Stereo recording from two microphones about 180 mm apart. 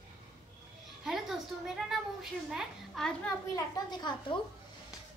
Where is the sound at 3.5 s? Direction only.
20° left (ahead or behind).